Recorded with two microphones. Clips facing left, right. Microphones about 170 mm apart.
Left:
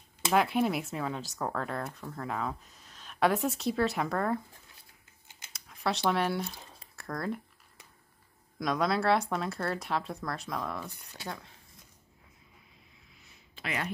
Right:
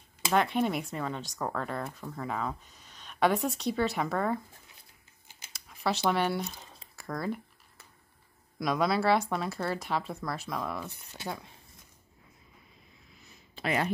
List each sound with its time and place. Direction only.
0.2 s speech: 5° left (ahead or behind)
5.5 s speech: centre (ahead or behind)
8.5 s speech: 5° right (ahead or behind)
13.2 s a sound: 40° right (ahead or behind)